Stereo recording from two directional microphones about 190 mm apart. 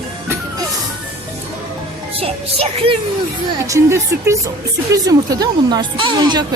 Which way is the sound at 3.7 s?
15° right (ahead or behind).